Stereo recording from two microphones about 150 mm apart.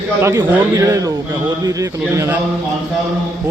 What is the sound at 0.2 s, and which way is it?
A man's voice, 20° right (ahead or behind).